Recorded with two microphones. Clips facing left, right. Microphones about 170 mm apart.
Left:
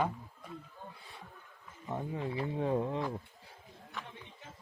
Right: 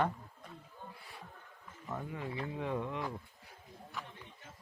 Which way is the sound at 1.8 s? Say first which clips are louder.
Left 4 dB; 25° left (ahead or behind).